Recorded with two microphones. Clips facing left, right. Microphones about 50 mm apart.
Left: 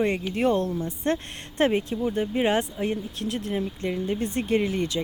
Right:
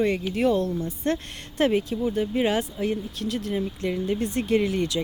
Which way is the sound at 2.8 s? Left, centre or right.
Left.